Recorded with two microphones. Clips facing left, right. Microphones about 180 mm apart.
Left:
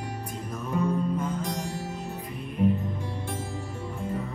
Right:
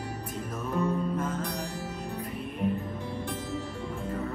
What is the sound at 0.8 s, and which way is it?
Music, 5° right (ahead or behind).